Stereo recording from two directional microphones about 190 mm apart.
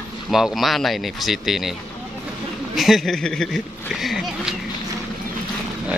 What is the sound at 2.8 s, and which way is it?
Speech, centre (ahead or behind).